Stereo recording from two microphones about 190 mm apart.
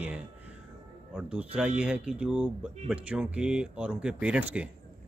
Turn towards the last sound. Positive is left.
turn(degrees=-5)  # may be behind; listen again after turning